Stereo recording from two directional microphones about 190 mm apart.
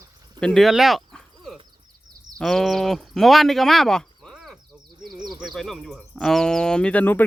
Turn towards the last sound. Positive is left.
turn(degrees=10)  # may be behind; listen again after turning